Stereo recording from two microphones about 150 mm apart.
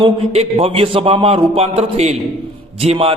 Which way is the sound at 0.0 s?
40° right (ahead or behind).